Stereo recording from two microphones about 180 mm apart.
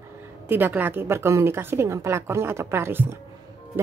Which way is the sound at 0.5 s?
10° right (ahead or behind).